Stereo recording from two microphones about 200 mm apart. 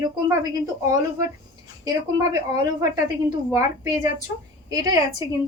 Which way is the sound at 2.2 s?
20° right (ahead or behind).